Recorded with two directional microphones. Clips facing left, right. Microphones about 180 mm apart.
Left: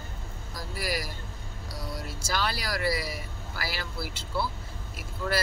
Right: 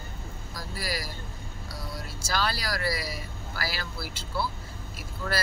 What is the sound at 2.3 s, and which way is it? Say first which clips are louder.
Speech: right 1 dB; 20° left (ahead or behind).